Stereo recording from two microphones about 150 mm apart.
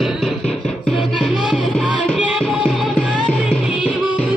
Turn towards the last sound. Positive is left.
turn(degrees=-5)  # may be behind; listen again after turning